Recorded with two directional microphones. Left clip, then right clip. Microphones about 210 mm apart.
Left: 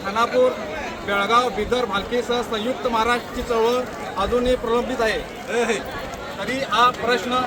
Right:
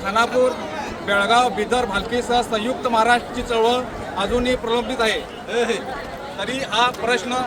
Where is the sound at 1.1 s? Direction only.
30° right (ahead or behind).